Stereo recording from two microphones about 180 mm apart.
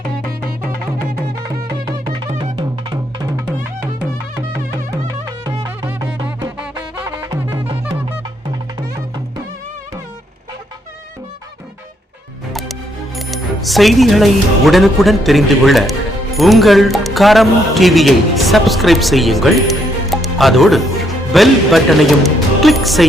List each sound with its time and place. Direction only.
2.0 s music: 25° right (ahead or behind)
5.8 s music: 10° right (ahead or behind)
13.1 s speech: centre (ahead or behind)